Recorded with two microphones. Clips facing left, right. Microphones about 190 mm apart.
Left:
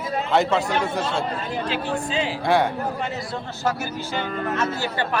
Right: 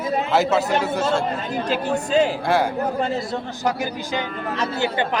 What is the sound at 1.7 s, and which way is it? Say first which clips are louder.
Speech: right 7 dB; 45° right (ahead or behind).